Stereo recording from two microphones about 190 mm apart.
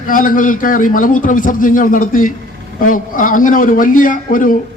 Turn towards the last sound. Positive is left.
turn(degrees=45)  # may be behind; listen again after turning